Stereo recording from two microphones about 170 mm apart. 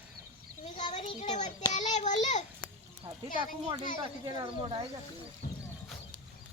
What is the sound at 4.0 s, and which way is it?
Speech, 30° right (ahead or behind).